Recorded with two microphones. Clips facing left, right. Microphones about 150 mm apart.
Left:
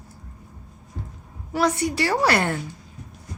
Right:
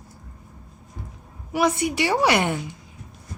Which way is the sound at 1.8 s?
15° right (ahead or behind).